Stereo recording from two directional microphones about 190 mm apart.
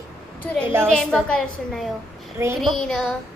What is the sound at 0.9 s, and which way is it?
A woman's voice, 5° left (ahead or behind).